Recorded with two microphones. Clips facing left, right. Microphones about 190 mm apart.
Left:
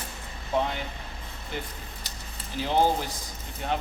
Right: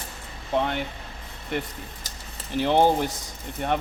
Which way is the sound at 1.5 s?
65° right (ahead or behind).